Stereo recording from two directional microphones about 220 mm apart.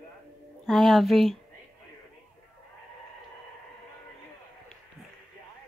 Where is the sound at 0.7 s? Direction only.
Centre (ahead or behind).